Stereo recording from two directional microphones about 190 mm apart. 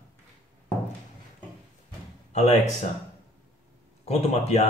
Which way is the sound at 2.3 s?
35° left (ahead or behind).